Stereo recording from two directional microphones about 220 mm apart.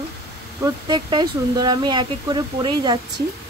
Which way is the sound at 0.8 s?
20° right (ahead or behind).